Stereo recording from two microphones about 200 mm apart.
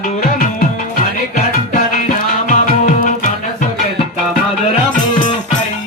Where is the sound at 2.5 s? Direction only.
40° left (ahead or behind).